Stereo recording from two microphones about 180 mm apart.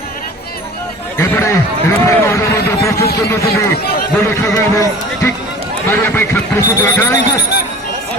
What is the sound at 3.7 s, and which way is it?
Speech, 55° left (ahead or behind).